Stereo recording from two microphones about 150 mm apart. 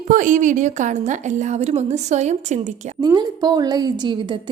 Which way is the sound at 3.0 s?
30° right (ahead or behind).